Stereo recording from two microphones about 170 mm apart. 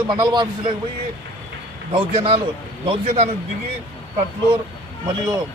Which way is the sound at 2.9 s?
40° right (ahead or behind).